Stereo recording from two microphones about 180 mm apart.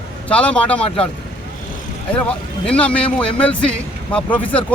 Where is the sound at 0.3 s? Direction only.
5° left (ahead or behind).